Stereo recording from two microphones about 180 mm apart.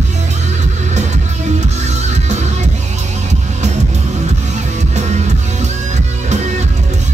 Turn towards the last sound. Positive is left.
turn(degrees=-40)  # may be behind; listen again after turning